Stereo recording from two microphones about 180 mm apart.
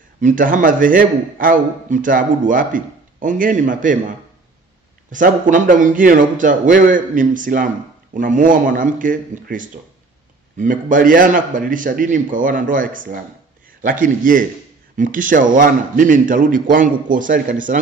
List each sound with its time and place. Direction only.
0.2 s a man's voice: 45° right (ahead or behind)
5.1 s a man's voice: 45° right (ahead or behind)